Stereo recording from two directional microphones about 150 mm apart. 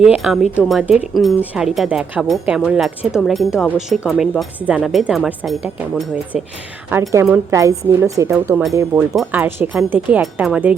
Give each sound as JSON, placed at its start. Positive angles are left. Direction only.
{"t": 0.0, "sound": "speech", "side_deg": -5}
{"t": 7.1, "sound": "speech", "side_deg": -20}
{"t": 9.1, "sound": "speech", "side_deg": -10}